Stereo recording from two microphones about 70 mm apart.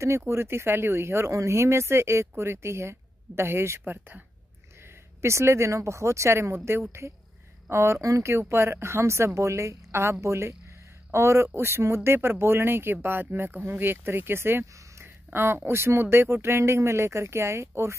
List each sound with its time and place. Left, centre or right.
0.3 s speech: right
5.2 s speech: right